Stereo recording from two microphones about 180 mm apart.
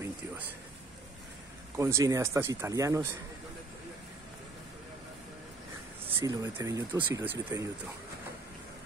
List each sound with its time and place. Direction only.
1.8 s speech: 15° right (ahead or behind)
6.1 s speech: 15° right (ahead or behind)